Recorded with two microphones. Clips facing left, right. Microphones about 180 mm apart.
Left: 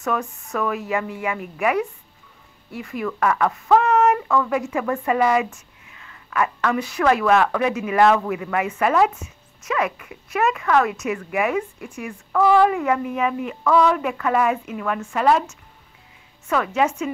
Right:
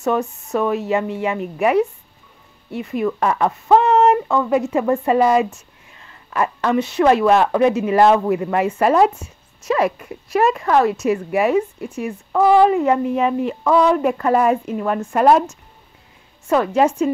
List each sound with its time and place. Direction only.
0.0 s speech: 25° right (ahead or behind)
16.4 s speech: 35° right (ahead or behind)